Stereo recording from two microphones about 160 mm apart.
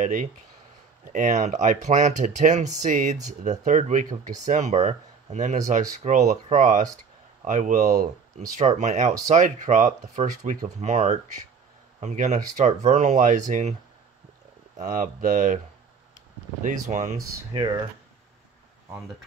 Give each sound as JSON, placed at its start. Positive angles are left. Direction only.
{"t": 0.0, "sound": "speech", "side_deg": -50}
{"t": 14.8, "sound": "speech", "side_deg": -50}
{"t": 16.6, "sound": "speech", "side_deg": -45}